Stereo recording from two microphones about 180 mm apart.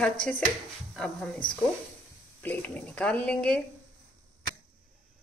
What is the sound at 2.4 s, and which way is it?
Speech, 10° left (ahead or behind).